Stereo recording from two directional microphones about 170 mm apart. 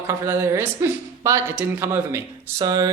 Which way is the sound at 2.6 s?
25° right (ahead or behind).